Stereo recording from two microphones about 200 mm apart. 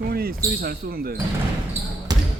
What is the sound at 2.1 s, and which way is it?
Basketball bounce, 20° right (ahead or behind).